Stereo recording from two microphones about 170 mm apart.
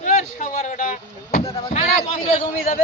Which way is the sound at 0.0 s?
45° left (ahead or behind).